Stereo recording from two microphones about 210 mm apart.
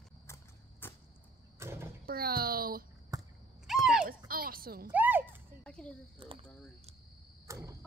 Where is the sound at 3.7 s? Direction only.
Centre (ahead or behind).